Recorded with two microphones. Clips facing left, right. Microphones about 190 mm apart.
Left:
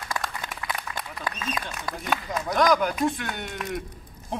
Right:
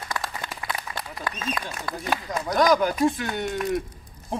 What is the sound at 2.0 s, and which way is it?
Speech, centre (ahead or behind).